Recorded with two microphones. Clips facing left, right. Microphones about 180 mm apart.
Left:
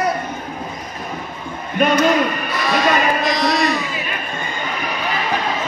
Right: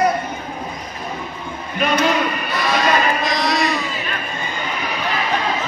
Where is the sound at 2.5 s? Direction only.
Centre (ahead or behind).